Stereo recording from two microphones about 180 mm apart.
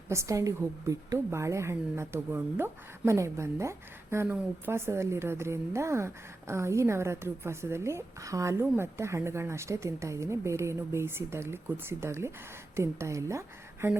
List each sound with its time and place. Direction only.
0.1 s a woman's voice: 15° right (ahead or behind)